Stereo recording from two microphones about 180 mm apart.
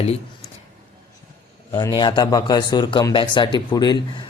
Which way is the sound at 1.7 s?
20° left (ahead or behind).